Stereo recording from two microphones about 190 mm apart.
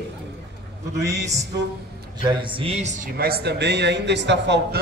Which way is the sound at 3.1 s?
55° right (ahead or behind).